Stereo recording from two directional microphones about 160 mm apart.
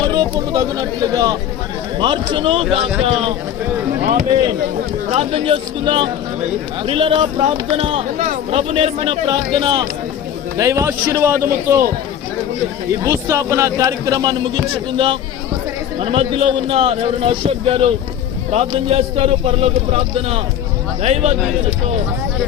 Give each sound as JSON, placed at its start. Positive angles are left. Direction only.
{"t": 0.1, "sound": "a man's voice", "side_deg": -25}
{"t": 4.0, "sound": "speech", "side_deg": -50}
{"t": 5.1, "sound": "a man's voice", "side_deg": -35}
{"t": 10.6, "sound": "speech", "side_deg": -20}
{"t": 12.9, "sound": "a man's voice", "side_deg": -15}